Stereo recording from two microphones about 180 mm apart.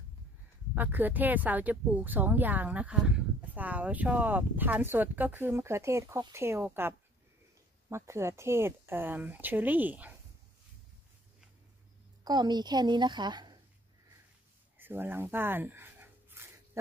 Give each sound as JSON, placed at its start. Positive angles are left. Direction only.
{"t": 0.7, "sound": "speech", "side_deg": -10}
{"t": 12.3, "sound": "a woman's voice", "side_deg": -25}
{"t": 14.8, "sound": "a sound", "side_deg": -10}